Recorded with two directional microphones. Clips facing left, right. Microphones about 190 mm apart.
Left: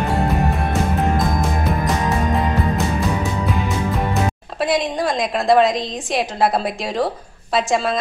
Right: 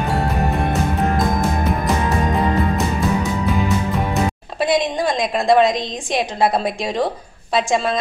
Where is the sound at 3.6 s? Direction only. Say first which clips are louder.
Right 1 dB; centre (ahead or behind).